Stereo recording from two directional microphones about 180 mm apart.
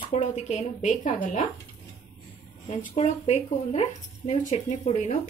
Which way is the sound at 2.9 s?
40° left (ahead or behind).